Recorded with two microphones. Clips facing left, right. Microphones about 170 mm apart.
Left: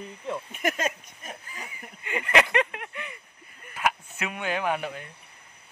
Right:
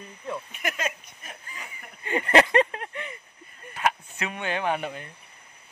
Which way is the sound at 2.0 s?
35° right (ahead or behind).